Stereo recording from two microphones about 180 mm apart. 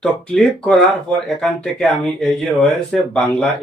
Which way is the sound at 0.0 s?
Centre (ahead or behind).